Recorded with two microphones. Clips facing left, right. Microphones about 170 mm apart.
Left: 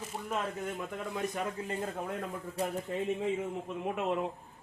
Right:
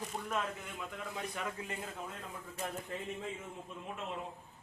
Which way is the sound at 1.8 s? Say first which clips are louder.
Left 8 dB; 55° left (ahead or behind).